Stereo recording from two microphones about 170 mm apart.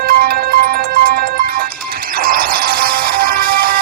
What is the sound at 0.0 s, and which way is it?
Music, 60° right (ahead or behind).